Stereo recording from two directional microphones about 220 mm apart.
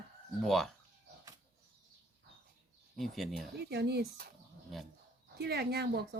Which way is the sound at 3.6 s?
50° right (ahead or behind).